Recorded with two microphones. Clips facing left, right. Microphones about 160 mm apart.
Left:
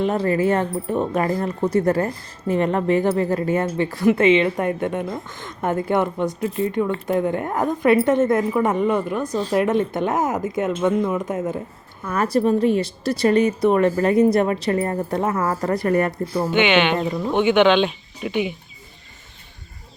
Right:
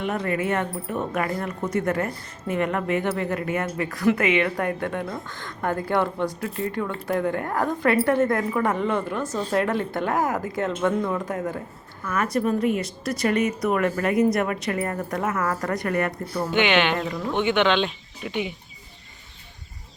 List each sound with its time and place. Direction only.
0.0 s a woman's voice: 30° left (ahead or behind)
12.0 s a woman's voice: 35° left (ahead or behind)
16.5 s speech: centre (ahead or behind)
16.9 s speech: 25° left (ahead or behind)